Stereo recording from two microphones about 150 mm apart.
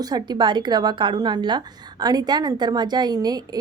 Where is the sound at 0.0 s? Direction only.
30° right (ahead or behind).